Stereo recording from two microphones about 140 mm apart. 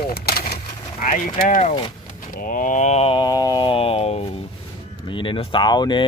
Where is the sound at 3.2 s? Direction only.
30° left (ahead or behind); by 4.3 s 45° left (ahead or behind).